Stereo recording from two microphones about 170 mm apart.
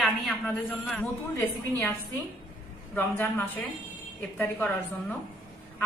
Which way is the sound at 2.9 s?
10° left (ahead or behind).